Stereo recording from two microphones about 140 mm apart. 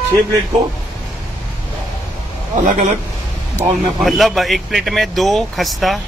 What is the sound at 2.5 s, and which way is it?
Speech, 60° right (ahead or behind).